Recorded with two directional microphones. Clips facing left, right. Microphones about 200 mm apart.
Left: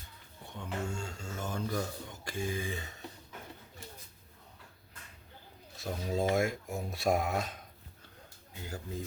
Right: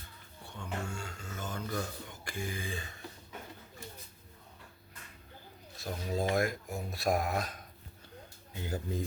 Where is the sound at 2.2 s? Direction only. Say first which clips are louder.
Left 4 dB; 25° left (ahead or behind).